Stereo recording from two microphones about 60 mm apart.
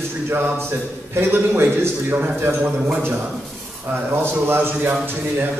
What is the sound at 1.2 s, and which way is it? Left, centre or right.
A man's voice, right.